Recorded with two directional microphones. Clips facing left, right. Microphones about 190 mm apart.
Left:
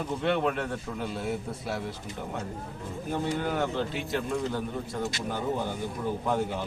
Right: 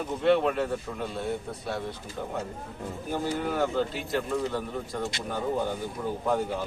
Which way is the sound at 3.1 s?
Centre (ahead or behind).